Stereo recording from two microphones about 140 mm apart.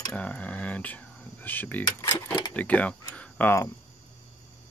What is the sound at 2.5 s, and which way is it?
Speech, 10° left (ahead or behind).